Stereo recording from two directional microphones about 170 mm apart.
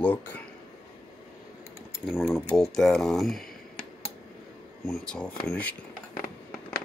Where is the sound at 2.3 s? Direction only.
Centre (ahead or behind).